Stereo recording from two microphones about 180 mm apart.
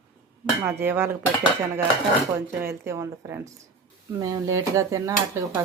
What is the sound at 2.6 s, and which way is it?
Speech, 15° right (ahead or behind).